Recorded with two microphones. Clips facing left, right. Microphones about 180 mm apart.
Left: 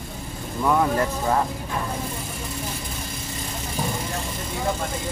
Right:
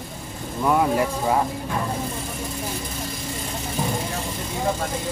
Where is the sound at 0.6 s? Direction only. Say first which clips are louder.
Right 1 dB; 10° right (ahead or behind).